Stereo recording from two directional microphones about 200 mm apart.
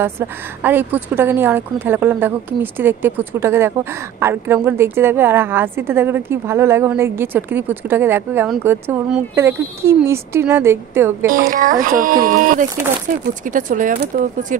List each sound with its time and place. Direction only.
0.6 s a woman's voice: 10° right (ahead or behind)
11.5 s speech: 45° right (ahead or behind)